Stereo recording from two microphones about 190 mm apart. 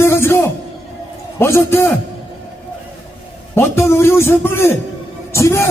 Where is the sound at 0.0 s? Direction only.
15° left (ahead or behind).